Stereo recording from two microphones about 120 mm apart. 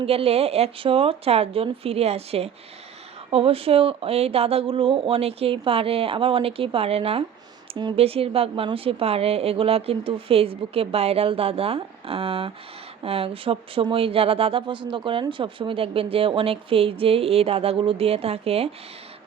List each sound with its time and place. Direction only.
0.0 s a woman's voice: 55° right (ahead or behind)